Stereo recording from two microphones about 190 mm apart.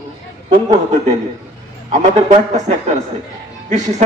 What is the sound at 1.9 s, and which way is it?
Speech, 40° right (ahead or behind).